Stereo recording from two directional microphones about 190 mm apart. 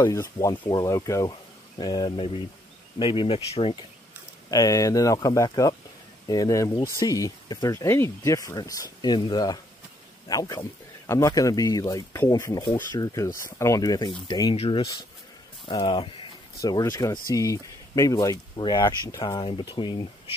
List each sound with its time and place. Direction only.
0.0 s speech: 15° left (ahead or behind)